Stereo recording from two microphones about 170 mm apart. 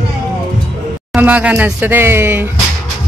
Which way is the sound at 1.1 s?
10° right (ahead or behind).